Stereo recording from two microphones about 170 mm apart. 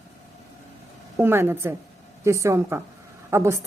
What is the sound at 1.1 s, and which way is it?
A woman's voice, 15° right (ahead or behind).